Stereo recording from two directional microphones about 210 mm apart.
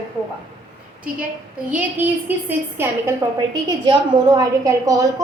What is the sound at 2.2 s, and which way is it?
A woman's voice, 10° right (ahead or behind).